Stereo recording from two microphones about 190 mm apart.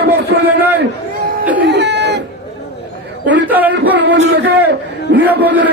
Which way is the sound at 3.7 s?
70° right (ahead or behind).